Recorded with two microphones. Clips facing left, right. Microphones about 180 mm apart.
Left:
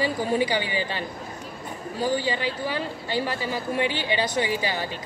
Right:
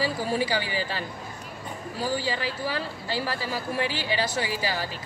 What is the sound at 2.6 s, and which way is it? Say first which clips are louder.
A woman's voice: left 2 dB; 20° left (ahead or behind).